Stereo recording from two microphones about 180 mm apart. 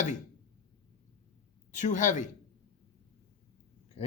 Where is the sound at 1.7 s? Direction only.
45° left (ahead or behind).